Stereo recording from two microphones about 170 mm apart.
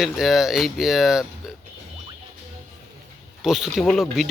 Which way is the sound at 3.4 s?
Centre (ahead or behind).